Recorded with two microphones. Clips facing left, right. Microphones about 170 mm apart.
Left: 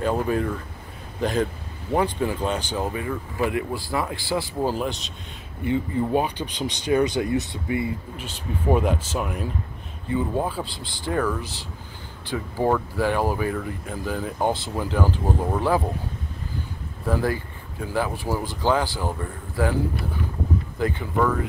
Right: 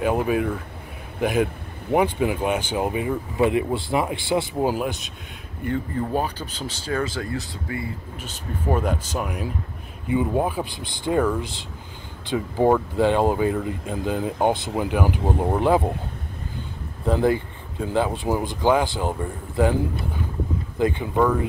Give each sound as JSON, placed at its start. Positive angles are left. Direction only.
{"t": 0.0, "sound": "speech", "side_deg": -10}
{"t": 5.7, "sound": "speech", "side_deg": 10}
{"t": 8.6, "sound": "speech", "side_deg": 5}
{"t": 10.0, "sound": "speech", "side_deg": -15}
{"t": 17.0, "sound": "speech", "side_deg": -20}